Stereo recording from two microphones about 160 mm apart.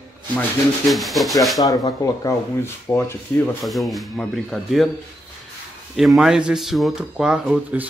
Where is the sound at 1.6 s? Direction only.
25° left (ahead or behind).